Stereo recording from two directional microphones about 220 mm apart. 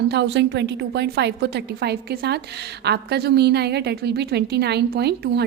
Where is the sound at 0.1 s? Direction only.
50° right (ahead or behind).